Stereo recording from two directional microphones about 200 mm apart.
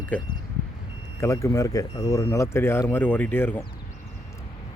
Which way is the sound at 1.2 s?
15° left (ahead or behind).